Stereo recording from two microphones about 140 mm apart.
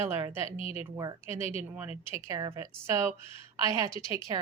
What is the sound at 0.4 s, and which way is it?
Speech, 45° left (ahead or behind).